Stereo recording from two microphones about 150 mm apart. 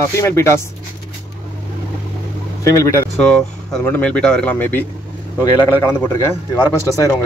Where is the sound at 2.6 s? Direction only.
20° left (ahead or behind).